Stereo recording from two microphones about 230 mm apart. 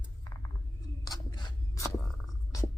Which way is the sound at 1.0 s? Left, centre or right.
Centre.